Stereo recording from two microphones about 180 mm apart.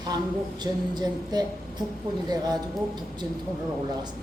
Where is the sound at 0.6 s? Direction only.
25° right (ahead or behind).